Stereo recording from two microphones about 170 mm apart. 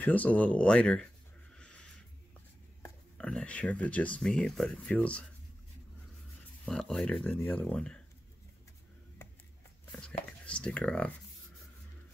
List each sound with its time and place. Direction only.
0.0 s speech: 10° left (ahead or behind)
1.6 s a sound: 5° left (ahead or behind)
2.8 s speech: 5° left (ahead or behind)
6.6 s speech: 5° left (ahead or behind)
9.9 s speech: 5° left (ahead or behind)